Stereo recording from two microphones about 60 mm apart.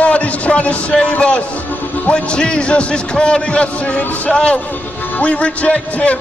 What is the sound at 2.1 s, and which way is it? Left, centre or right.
A man's voice, centre.